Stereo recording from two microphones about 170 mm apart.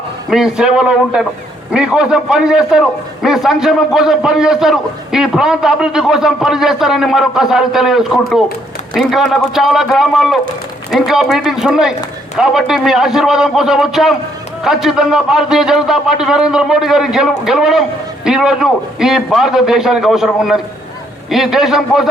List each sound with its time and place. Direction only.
0.3 s a man's voice: 5° right (ahead or behind)